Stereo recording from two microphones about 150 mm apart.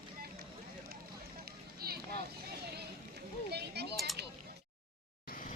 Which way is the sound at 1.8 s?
90° right.